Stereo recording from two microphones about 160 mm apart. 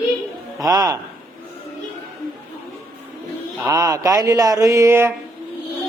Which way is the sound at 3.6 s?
20° right (ahead or behind).